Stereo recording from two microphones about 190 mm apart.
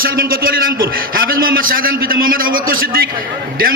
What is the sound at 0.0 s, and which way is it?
A man's voice, 50° right (ahead or behind).